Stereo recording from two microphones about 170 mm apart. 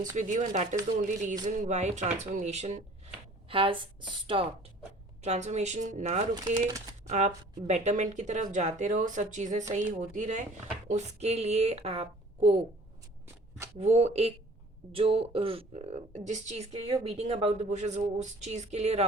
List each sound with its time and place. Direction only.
0.0 s speech: 45° right (ahead or behind); by 4.4 s 30° right (ahead or behind)
5.2 s speech: 40° right (ahead or behind)
13.7 s speech: 40° right (ahead or behind)